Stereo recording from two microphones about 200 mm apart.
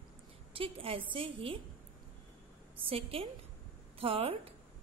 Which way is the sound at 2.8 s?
30° right (ahead or behind).